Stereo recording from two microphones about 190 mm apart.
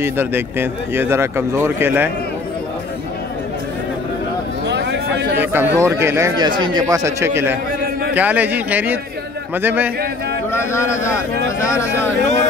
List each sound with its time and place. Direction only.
0.0 s speech: 10° right (ahead or behind)
4.6 s a sound: 60° right (ahead or behind)
5.4 s speech: 10° right (ahead or behind)
10.5 s a man's voice: 15° left (ahead or behind)